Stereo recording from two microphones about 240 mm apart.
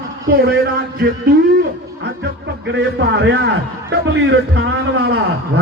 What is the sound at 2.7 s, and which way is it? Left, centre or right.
Speech, right.